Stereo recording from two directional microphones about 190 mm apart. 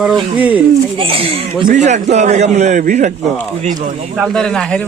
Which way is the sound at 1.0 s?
30° right (ahead or behind).